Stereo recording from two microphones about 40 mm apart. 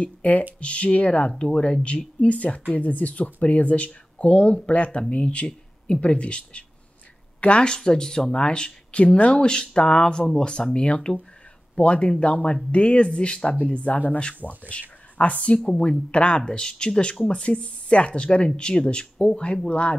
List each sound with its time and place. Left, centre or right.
0.0 s speech: left
7.7 s speech: centre